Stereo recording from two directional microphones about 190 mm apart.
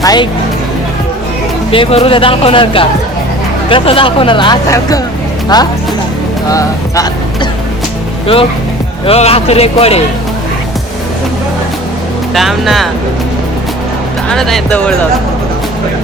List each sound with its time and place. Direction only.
0.0 s speech: 20° left (ahead or behind)
1.7 s speech: 30° left (ahead or behind)
9.0 s a man's voice: 30° left (ahead or behind)
12.3 s speech: centre (ahead or behind)
14.3 s speech: centre (ahead or behind)